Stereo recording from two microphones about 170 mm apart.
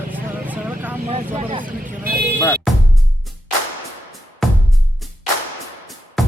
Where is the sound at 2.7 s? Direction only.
Centre (ahead or behind).